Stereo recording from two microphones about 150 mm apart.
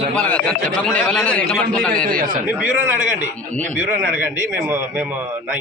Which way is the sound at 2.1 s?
70° right (ahead or behind).